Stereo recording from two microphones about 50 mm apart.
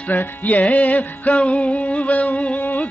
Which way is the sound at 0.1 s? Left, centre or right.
Left.